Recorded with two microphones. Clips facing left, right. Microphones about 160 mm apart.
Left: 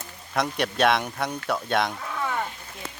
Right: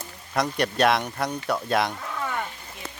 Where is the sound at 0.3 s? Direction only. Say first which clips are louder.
Right 1 dB; centre (ahead or behind).